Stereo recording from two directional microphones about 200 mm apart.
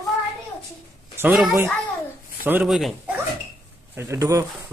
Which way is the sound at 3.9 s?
15° right (ahead or behind).